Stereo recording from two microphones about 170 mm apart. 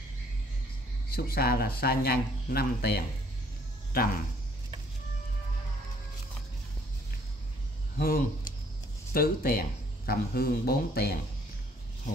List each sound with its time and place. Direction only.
1.1 s speech: 65° left (ahead or behind)
8.0 s speech: 60° left (ahead or behind)